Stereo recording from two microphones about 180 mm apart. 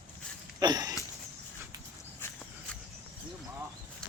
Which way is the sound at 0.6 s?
20° right (ahead or behind).